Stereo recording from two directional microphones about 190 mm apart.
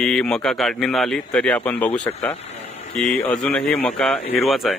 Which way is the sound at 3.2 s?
5° left (ahead or behind).